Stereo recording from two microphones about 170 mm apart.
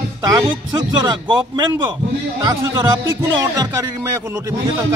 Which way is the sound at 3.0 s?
15° right (ahead or behind).